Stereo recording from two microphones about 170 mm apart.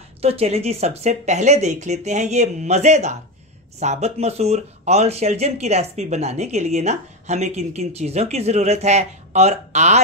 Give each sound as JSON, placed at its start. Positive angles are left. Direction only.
{"t": 0.2, "sound": "speech", "side_deg": -35}